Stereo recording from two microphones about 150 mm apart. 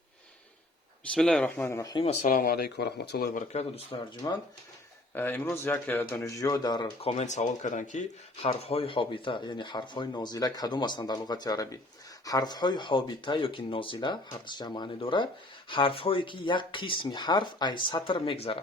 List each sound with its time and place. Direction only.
1.1 s speech: 5° left (ahead or behind); by 2.0 s 25° left (ahead or behind)
2.2 s speech: 65° left (ahead or behind); by 3.4 s 90° left
3.5 s speech: 45° left (ahead or behind)
4.2 s speech: 30° left (ahead or behind)
5.1 s speech: 15° left (ahead or behind)
7.0 s speech: 45° left (ahead or behind)
8.4 s speech: 40° left (ahead or behind)